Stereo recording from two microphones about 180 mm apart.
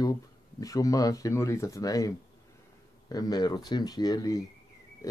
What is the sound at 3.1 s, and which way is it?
Speech, 20° left (ahead or behind).